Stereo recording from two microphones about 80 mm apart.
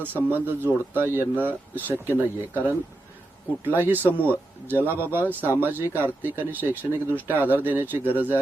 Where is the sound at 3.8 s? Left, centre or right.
Right.